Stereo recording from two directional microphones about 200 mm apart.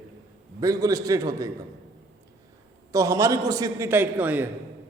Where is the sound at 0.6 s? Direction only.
15° right (ahead or behind).